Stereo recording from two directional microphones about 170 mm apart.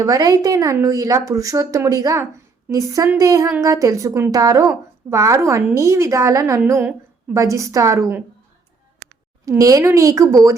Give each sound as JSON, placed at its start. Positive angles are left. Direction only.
{"t": 0.0, "sound": "a woman's voice", "side_deg": -20}
{"t": 9.5, "sound": "a woman's voice", "side_deg": -20}